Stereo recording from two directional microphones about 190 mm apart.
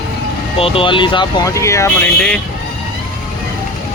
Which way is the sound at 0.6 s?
30° left (ahead or behind).